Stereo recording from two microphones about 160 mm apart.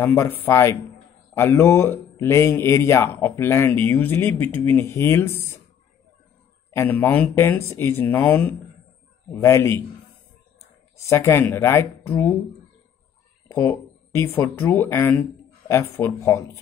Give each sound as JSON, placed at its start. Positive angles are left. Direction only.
{"t": 0.0, "sound": "speech", "side_deg": 15}
{"t": 6.7, "sound": "speech", "side_deg": 15}
{"t": 11.0, "sound": "speech", "side_deg": 20}
{"t": 13.5, "sound": "speech", "side_deg": 15}